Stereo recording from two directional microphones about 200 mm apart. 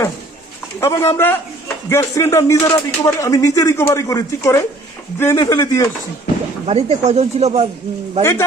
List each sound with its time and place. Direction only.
0.8 s a man's voice: 15° left (ahead or behind)
6.7 s speech: 30° right (ahead or behind)
8.2 s speech: 10° left (ahead or behind)